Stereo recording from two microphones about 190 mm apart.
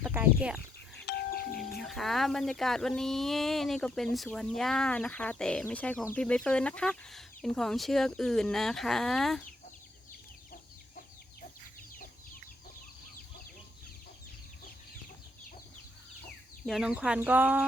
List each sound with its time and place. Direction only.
0.0 s a sound: 10° right (ahead or behind)
1.1 s doorbell: 60° left (ahead or behind)
1.8 s speech: centre (ahead or behind)
16.2 s speech: centre (ahead or behind)